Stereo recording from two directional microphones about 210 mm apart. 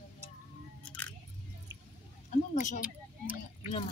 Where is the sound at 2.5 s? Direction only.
35° left (ahead or behind).